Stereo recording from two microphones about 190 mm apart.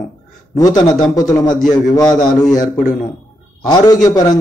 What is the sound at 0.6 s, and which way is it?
Speech, 20° left (ahead or behind).